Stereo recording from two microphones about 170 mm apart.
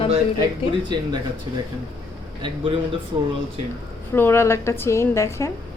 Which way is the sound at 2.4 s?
30° right (ahead or behind).